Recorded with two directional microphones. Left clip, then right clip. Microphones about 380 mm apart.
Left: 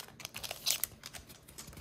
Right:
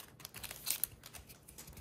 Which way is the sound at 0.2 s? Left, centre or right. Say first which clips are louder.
Left 9 dB; centre.